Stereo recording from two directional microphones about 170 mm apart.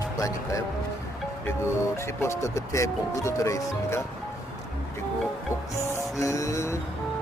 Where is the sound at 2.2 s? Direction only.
15° left (ahead or behind).